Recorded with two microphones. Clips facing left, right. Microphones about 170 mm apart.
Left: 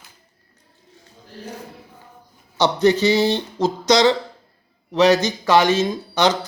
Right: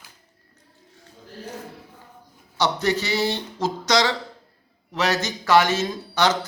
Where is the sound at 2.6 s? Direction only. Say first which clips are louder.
Left 6 dB; 20° left (ahead or behind).